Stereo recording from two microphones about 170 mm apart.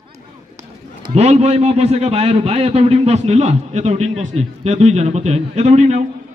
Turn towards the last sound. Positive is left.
turn(degrees=-40)  # may be behind; listen again after turning